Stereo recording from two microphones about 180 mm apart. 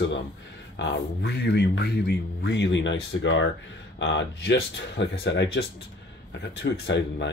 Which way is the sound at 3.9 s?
75° left (ahead or behind).